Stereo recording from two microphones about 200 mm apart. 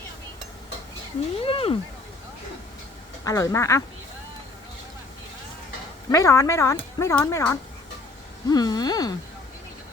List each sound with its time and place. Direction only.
1.5 s speech: 30° left (ahead or behind)
3.2 s speech: 15° left (ahead or behind)
6.1 s speech: 15° left (ahead or behind)